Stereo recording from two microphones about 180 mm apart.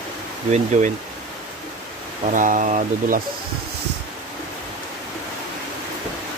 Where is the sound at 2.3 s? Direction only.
45° right (ahead or behind).